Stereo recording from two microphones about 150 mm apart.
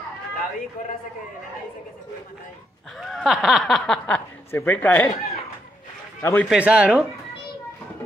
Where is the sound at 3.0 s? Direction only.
Centre (ahead or behind).